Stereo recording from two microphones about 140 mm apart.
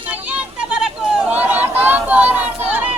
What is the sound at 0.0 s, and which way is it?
Chatter, 10° right (ahead or behind).